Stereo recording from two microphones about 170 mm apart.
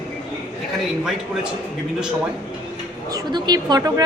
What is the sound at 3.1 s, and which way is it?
Speech, 25° right (ahead or behind).